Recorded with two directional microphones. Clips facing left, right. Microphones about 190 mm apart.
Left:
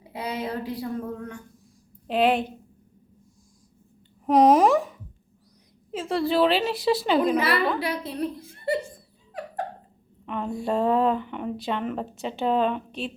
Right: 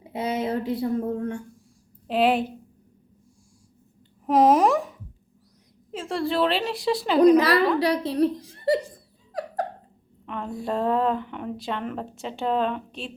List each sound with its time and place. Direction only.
0.0 s speech: 25° right (ahead or behind)
2.0 s a woman's voice: 5° right (ahead or behind)
4.3 s a woman's voice: centre (ahead or behind)
7.3 s a woman's voice: 40° right (ahead or behind)
10.2 s a woman's voice: centre (ahead or behind)